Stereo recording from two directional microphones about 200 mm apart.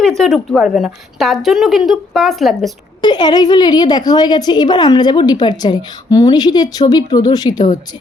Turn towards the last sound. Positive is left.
turn(degrees=20)  # may be behind; listen again after turning